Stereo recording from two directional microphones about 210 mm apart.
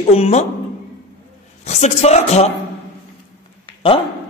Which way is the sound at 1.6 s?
30° left (ahead or behind).